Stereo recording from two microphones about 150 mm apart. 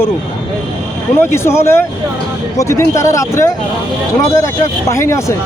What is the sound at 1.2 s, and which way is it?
Speech, 15° left (ahead or behind).